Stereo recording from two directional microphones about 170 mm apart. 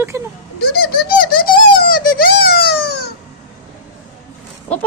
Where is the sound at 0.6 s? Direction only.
65° left (ahead or behind).